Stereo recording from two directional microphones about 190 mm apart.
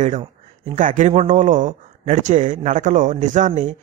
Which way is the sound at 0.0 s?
35° right (ahead or behind).